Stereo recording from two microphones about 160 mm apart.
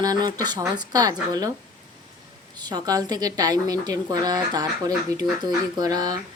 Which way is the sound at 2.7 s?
25° right (ahead or behind).